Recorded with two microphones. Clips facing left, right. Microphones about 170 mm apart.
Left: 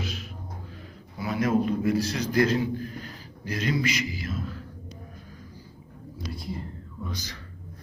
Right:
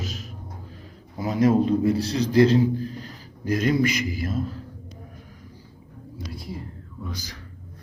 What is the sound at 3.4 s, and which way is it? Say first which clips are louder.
A man's voice: right 6 dB; 50° right (ahead or behind).